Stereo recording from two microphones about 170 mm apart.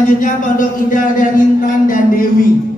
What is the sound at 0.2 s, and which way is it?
A woman's voice, 50° left (ahead or behind).